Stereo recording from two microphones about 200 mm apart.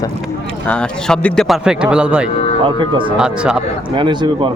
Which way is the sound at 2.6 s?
25° right (ahead or behind).